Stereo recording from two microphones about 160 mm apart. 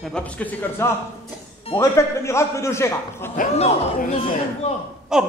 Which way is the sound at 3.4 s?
55° left (ahead or behind).